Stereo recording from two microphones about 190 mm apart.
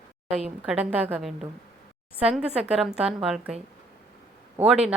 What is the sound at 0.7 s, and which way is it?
A woman's voice, 10° right (ahead or behind).